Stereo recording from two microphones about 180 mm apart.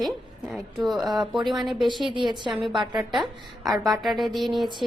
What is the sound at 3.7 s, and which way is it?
Speech, centre (ahead or behind).